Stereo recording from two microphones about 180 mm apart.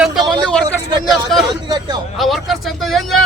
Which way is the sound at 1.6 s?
25° right (ahead or behind).